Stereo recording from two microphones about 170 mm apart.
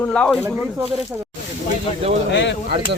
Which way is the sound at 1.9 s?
40° left (ahead or behind).